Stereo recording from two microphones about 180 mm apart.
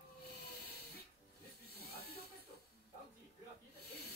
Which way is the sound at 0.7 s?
60° left (ahead or behind).